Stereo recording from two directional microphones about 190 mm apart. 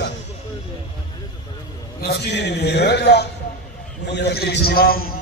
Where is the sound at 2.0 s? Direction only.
60° left (ahead or behind).